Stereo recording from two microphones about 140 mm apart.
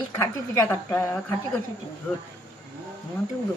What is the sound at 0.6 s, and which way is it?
Speech, 20° left (ahead or behind).